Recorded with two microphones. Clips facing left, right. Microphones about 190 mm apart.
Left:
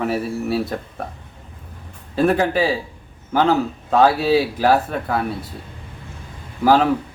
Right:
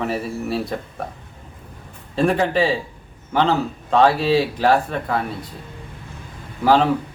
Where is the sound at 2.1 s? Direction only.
Centre (ahead or behind).